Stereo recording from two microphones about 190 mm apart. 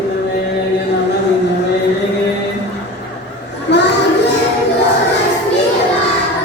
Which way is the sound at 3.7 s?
65° left (ahead or behind).